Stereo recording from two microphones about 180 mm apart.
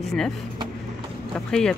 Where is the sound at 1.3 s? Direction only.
5° left (ahead or behind).